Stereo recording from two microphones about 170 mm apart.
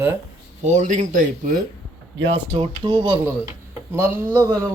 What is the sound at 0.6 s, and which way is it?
Speech, 50° right (ahead or behind).